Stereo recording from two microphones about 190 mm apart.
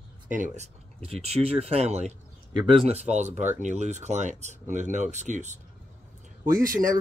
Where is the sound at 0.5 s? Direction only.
35° right (ahead or behind).